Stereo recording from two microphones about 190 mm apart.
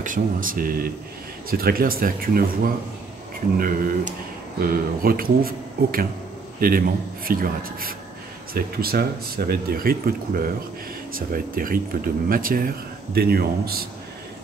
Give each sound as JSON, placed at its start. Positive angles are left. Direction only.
{"t": 0.0, "sound": "speech", "side_deg": -45}